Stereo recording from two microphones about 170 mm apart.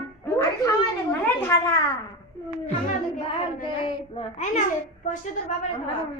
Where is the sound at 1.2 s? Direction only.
20° left (ahead or behind).